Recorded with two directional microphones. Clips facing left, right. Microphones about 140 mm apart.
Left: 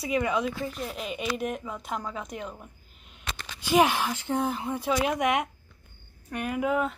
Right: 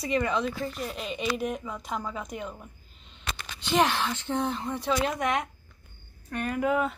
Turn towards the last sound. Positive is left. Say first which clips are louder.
# even
turn(degrees=0)  # may be behind; listen again after turning